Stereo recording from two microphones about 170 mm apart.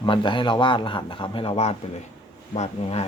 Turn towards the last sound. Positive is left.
turn(degrees=35)  # may be behind; listen again after turning